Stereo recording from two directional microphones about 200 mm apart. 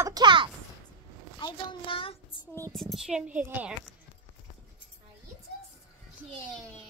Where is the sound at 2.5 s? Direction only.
10° left (ahead or behind).